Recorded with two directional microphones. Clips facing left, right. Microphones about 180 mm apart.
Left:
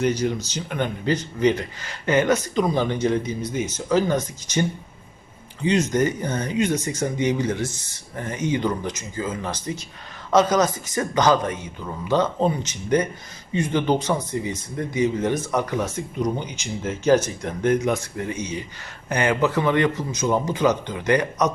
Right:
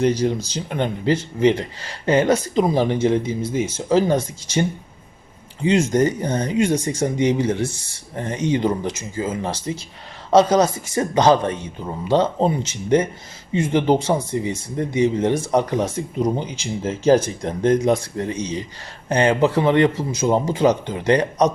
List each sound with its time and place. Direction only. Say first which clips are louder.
0.0 s speech: right 3 dB; 30° right (ahead or behind)
5.6 s speech: right 3 dB; 30° right (ahead or behind)